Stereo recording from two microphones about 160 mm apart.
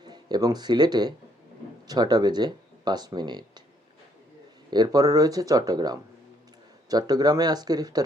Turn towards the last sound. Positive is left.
turn(degrees=-25)  # may be behind; listen again after turning